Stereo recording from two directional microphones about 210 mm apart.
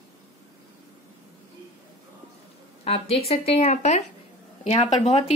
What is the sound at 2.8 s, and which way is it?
Speech, 30° left (ahead or behind).